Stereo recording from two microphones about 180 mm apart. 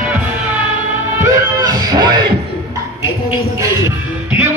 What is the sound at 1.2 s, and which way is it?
Music, 20° right (ahead or behind).